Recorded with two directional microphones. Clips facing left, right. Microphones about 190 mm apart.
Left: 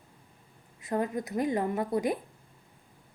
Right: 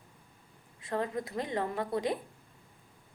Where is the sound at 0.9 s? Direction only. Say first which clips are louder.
Left 3 dB; 20° left (ahead or behind).